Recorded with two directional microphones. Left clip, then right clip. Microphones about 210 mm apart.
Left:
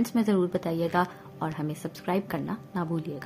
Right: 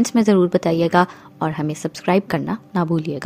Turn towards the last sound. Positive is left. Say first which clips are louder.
# right 11 dB
turn(degrees=-35)  # may be behind; listen again after turning